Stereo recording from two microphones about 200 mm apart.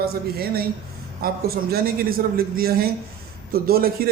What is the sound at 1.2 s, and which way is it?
Speech, 50° right (ahead or behind).